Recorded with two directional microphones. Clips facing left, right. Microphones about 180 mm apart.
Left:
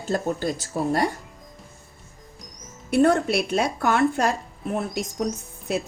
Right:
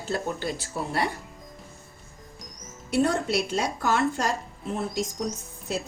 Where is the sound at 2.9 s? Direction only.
55° left (ahead or behind).